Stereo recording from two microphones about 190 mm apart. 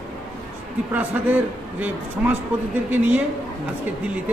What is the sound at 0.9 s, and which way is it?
A man's voice, 10° right (ahead or behind).